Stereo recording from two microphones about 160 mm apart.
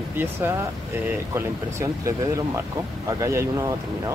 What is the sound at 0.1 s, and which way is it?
Speech, 15° right (ahead or behind).